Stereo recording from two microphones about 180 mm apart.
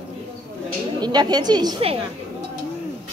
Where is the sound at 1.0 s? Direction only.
25° right (ahead or behind).